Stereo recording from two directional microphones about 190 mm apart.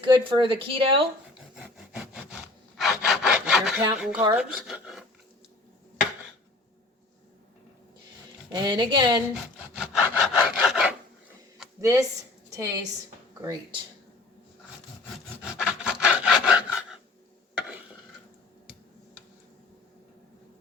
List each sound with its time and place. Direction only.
0.0 s speech: 25° right (ahead or behind)
2.7 s sawing: centre (ahead or behind)
4.5 s a sound: centre (ahead or behind)
8.5 s speech: 25° right (ahead or behind)
9.3 s wood: 5° right (ahead or behind)
10.2 s rub: 5° right (ahead or behind)
11.8 s a woman's voice: 15° right (ahead or behind)
15.4 s rub: 5° right (ahead or behind)